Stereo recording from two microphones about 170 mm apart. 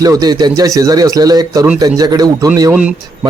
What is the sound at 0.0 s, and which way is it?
Speech, 20° right (ahead or behind).